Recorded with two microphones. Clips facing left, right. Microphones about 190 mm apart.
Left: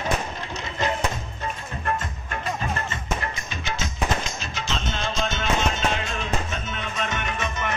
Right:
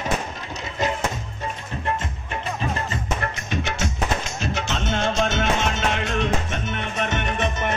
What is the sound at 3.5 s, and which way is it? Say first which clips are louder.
Music: right 5 dB; 65° right (ahead or behind).